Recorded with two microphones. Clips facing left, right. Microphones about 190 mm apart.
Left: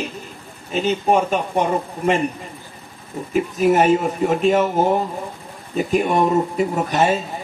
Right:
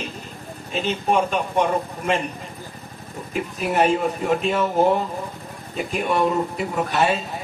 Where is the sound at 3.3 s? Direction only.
45° left (ahead or behind).